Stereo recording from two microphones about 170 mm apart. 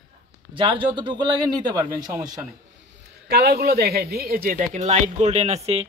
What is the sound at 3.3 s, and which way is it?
Speech, 70° right (ahead or behind).